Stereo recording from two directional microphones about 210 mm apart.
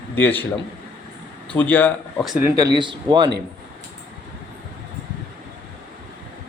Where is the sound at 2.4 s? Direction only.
15° right (ahead or behind).